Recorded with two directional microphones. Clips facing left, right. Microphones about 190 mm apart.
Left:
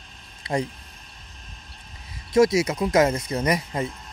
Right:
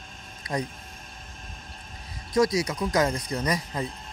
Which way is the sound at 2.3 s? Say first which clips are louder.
Left 5 dB; 25° left (ahead or behind).